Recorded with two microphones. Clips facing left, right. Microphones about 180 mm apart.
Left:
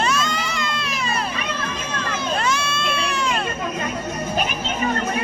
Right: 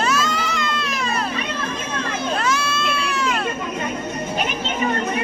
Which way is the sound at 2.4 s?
5° right (ahead or behind).